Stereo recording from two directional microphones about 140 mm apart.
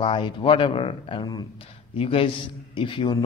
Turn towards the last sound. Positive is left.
turn(degrees=35)  # may be behind; listen again after turning